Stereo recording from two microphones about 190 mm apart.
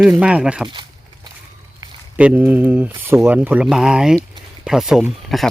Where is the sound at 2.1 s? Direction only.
10° right (ahead or behind).